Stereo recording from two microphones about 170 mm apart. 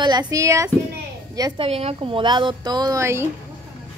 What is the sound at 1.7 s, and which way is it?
Speech, 35° right (ahead or behind).